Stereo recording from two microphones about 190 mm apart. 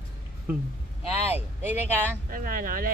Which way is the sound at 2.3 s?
45° right (ahead or behind).